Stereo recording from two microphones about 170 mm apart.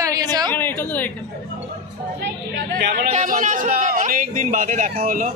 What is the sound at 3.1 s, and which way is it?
A man's voice, 50° right (ahead or behind).